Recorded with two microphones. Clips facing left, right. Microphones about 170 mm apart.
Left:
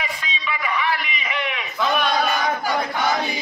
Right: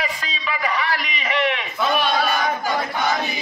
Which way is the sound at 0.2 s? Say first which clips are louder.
Right 2 dB; 40° right (ahead or behind).